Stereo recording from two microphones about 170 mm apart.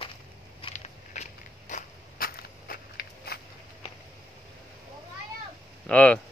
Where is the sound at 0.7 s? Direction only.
40° left (ahead or behind).